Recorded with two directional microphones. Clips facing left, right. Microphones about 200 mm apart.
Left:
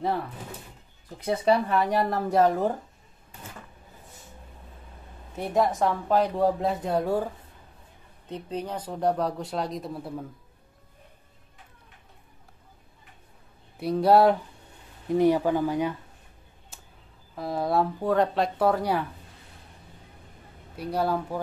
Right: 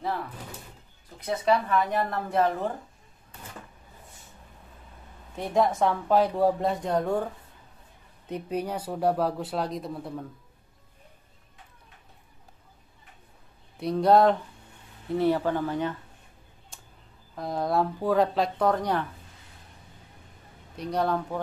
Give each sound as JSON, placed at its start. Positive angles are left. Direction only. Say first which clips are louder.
{"t": 1.2, "sound": "speech", "louder": "left 2 dB", "side_deg": 30}
{"t": 5.3, "sound": "speech", "louder": "even", "side_deg": 5}
{"t": 8.3, "sound": "speech", "louder": "right 2 dB", "side_deg": -10}
{"t": 13.7, "sound": "speech", "louder": "left 1 dB", "side_deg": 5}
{"t": 16.7, "sound": "a sound", "louder": "left 1 dB", "side_deg": 5}
{"t": 17.4, "sound": "speech", "louder": "left 1 dB", "side_deg": 5}
{"t": 20.7, "sound": "speech", "louder": "even", "side_deg": 5}